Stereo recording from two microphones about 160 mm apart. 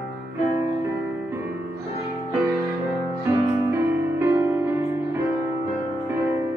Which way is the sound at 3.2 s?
15° right (ahead or behind).